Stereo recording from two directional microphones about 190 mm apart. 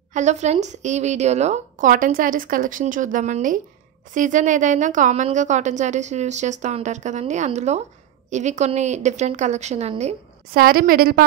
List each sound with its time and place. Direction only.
0.1 s a woman's voice: 40° right (ahead or behind)
10.5 s a woman's voice: 50° right (ahead or behind)